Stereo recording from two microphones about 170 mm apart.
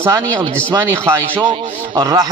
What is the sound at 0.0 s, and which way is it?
A man's voice, 20° right (ahead or behind).